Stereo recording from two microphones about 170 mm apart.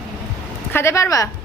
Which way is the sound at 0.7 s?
15° left (ahead or behind).